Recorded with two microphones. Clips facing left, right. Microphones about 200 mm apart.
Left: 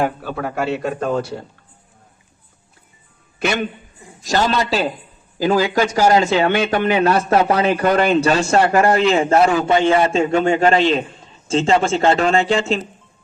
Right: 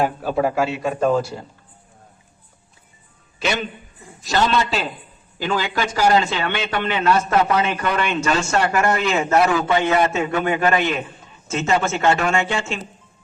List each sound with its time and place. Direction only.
0.2 s a man's voice: 60° left (ahead or behind)
3.4 s a man's voice: 55° left (ahead or behind)
4.2 s a man's voice: 40° left (ahead or behind)